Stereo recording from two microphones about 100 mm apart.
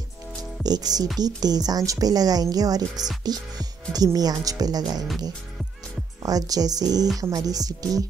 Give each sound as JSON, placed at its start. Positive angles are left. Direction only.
{"t": 0.4, "sound": "music", "side_deg": -40}
{"t": 1.2, "sound": "speech", "side_deg": -40}
{"t": 6.2, "sound": "speech", "side_deg": -40}